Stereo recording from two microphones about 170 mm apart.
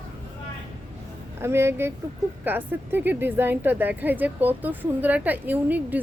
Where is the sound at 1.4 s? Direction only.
15° right (ahead or behind).